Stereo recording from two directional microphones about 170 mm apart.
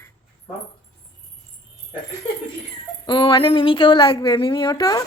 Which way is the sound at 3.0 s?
30° left (ahead or behind).